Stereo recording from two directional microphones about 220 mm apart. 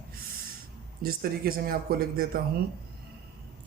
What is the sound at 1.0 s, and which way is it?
Speech, 40° right (ahead or behind).